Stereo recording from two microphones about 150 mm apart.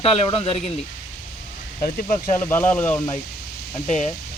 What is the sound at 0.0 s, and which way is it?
Speech, 40° left (ahead or behind).